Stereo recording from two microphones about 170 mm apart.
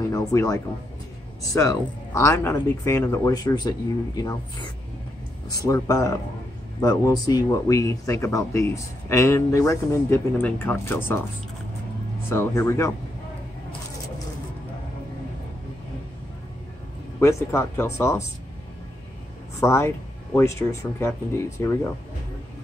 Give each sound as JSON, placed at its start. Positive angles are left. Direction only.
{"t": 0.1, "sound": "speech", "side_deg": 20}
{"t": 12.3, "sound": "speech", "side_deg": 15}
{"t": 17.2, "sound": "speech", "side_deg": 15}
{"t": 19.6, "sound": "speech", "side_deg": 15}